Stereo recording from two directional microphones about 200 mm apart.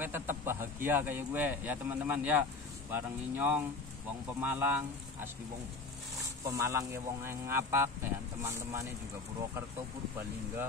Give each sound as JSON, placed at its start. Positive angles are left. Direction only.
{"t": 0.0, "sound": "a sound", "side_deg": -10}
{"t": 0.8, "sound": "speech", "side_deg": -10}
{"t": 6.5, "sound": "speech", "side_deg": -15}